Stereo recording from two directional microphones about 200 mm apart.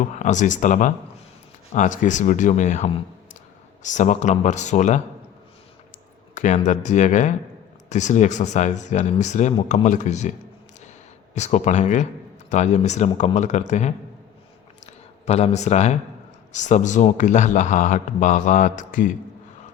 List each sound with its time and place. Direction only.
0.2 s speech: 40° left (ahead or behind)
6.3 s speech: 35° left (ahead or behind)
11.3 s speech: 35° left (ahead or behind)
15.3 s speech: 35° left (ahead or behind)